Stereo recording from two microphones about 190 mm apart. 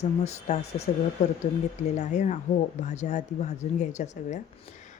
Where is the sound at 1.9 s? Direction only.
40° left (ahead or behind).